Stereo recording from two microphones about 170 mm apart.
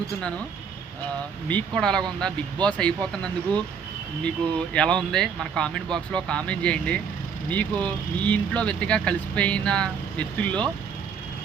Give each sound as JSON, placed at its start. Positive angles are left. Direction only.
{"t": 1.5, "sound": "speech", "side_deg": 5}